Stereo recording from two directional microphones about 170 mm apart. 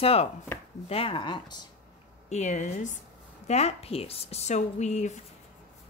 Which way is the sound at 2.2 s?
40° left (ahead or behind).